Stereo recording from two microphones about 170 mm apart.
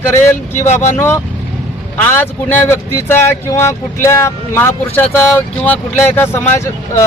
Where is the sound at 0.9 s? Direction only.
15° left (ahead or behind).